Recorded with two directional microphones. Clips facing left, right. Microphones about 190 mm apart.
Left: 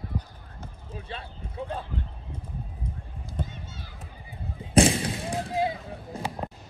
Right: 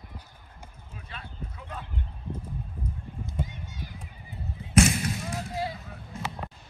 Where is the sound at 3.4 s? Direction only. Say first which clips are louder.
Left 1 dB; 15° right (ahead or behind).